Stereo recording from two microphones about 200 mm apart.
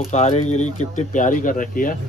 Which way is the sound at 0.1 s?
35° left (ahead or behind).